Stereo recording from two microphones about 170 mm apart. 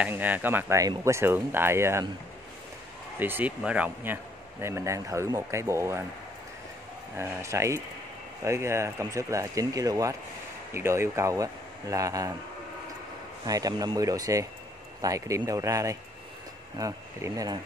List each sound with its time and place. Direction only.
0.0 s speech: 10° right (ahead or behind)
3.2 s speech: 10° right (ahead or behind)
7.2 s speech: 15° right (ahead or behind)
13.5 s speech: 20° right (ahead or behind)